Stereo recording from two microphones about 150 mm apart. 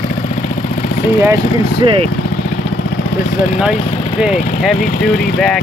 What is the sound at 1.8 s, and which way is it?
Speech, 35° right (ahead or behind).